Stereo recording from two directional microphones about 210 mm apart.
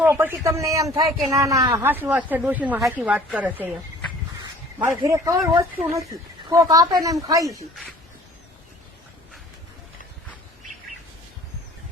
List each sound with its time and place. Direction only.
0.0 s a man's voice: 10° right (ahead or behind)
4.9 s a man's voice: 15° right (ahead or behind)